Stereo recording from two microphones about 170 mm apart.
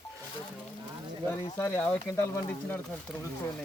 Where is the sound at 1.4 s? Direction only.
15° left (ahead or behind).